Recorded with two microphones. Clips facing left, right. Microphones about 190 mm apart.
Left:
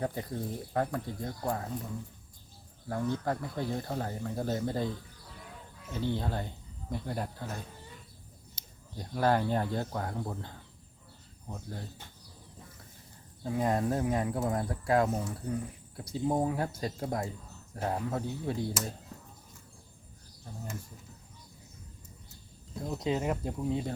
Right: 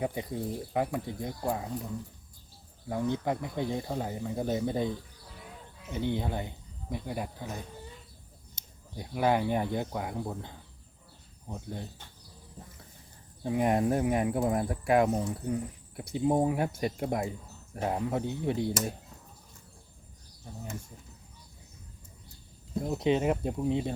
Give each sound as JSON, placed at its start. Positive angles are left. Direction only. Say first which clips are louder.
{"t": 0.0, "sound": "speech", "louder": "right 2 dB", "side_deg": -10}
{"t": 3.1, "sound": "speech", "louder": "right 1 dB", "side_deg": -20}
{"t": 9.0, "sound": "speech", "louder": "right 1 dB", "side_deg": -10}
{"t": 13.4, "sound": "speech", "louder": "right 3 dB", "side_deg": -20}
{"t": 20.5, "sound": "speech", "louder": "right 1 dB", "side_deg": -10}
{"t": 22.8, "sound": "speech", "louder": "right 5 dB", "side_deg": -20}